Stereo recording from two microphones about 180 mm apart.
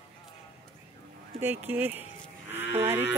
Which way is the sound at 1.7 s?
10° right (ahead or behind).